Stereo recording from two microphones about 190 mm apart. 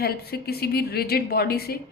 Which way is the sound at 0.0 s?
55° left (ahead or behind).